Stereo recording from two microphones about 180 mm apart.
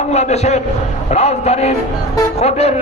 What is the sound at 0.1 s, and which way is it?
A man's voice, 35° left (ahead or behind).